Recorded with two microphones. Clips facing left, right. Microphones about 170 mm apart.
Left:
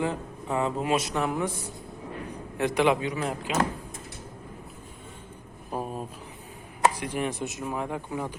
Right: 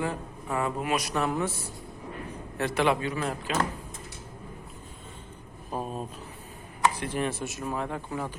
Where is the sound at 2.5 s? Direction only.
15° left (ahead or behind).